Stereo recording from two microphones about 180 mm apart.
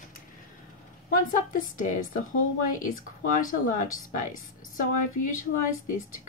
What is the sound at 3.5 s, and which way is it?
Speech, 45° left (ahead or behind).